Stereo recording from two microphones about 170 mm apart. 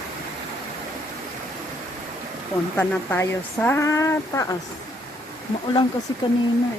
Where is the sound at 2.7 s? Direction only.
10° left (ahead or behind).